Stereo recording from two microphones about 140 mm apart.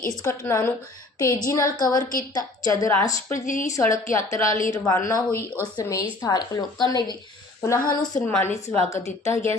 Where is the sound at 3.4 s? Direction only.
65° left (ahead or behind).